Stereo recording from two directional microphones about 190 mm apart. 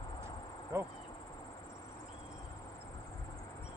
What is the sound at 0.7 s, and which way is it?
Insect, 15° right (ahead or behind).